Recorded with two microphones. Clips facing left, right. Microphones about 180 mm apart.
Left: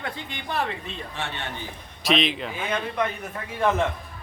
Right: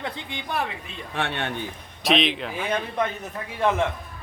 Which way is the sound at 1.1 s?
60° right (ahead or behind).